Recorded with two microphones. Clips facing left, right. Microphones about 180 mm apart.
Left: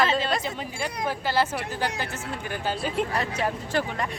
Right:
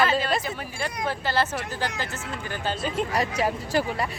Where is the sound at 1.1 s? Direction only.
10° left (ahead or behind).